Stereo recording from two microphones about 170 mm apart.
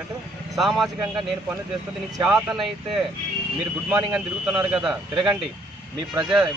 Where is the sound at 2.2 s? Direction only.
5° right (ahead or behind).